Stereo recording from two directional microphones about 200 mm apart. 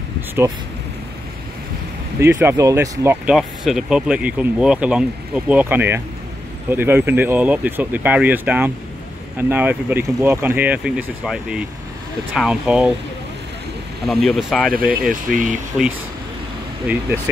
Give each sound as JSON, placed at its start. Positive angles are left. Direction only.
{"t": 2.1, "sound": "speech", "side_deg": -15}
{"t": 14.0, "sound": "speech", "side_deg": 0}
{"t": 14.7, "sound": "speech", "side_deg": -45}
{"t": 15.7, "sound": "speech", "side_deg": 0}